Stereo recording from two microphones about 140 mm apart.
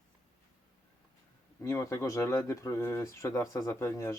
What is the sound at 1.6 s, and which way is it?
Speech, 20° left (ahead or behind).